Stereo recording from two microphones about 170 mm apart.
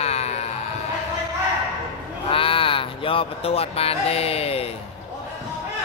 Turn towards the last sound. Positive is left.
turn(degrees=35)  # may be behind; listen again after turning